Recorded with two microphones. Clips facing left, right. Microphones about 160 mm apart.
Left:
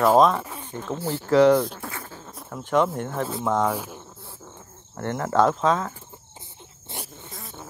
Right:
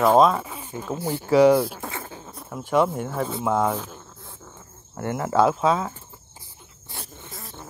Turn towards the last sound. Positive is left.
turn(degrees=0)  # may be behind; listen again after turning